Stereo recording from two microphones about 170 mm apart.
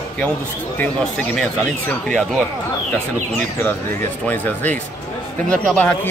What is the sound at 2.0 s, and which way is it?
Speech, 5° left (ahead or behind).